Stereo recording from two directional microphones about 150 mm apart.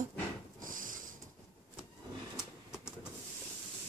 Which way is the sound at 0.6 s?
65° right (ahead or behind).